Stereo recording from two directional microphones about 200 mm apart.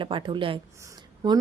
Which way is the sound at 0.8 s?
20° right (ahead or behind).